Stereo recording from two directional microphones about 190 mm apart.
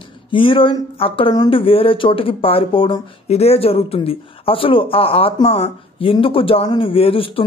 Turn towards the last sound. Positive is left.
turn(degrees=30)  # may be behind; listen again after turning